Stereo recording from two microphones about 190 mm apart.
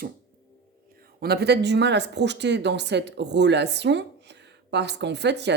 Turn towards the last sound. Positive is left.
turn(degrees=-65)  # may be behind; listen again after turning